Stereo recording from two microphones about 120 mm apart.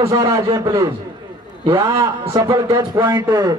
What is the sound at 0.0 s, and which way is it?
A man's voice, 25° right (ahead or behind).